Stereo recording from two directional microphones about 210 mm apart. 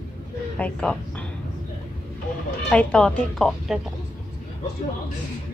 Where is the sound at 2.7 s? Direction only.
5° left (ahead or behind).